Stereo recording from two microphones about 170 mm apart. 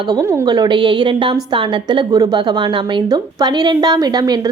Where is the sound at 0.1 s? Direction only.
25° right (ahead or behind).